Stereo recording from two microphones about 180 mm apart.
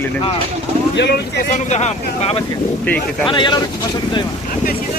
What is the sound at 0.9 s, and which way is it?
Speech, 70° left (ahead or behind).